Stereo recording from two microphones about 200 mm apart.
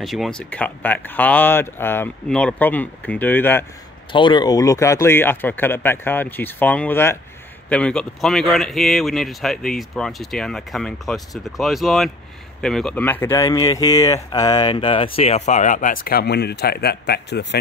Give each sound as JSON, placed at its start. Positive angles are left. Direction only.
{"t": 0.0, "sound": "speech", "side_deg": 0}
{"t": 4.1, "sound": "speech", "side_deg": 25}